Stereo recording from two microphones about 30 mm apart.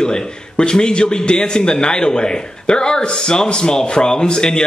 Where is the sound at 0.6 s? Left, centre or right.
Left.